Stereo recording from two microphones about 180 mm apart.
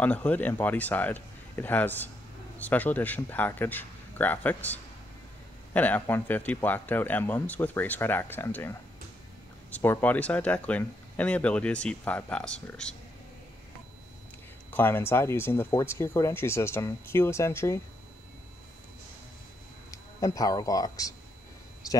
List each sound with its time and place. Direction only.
0.0 s speech: 10° left (ahead or behind)
14.7 s speech: 10° left (ahead or behind)
20.3 s speech: 20° left (ahead or behind)